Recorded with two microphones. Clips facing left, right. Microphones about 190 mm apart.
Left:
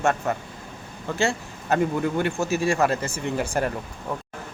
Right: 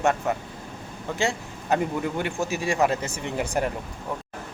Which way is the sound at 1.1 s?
15° right (ahead or behind).